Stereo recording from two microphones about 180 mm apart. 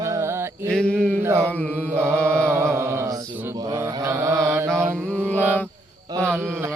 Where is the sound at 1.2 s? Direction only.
15° right (ahead or behind).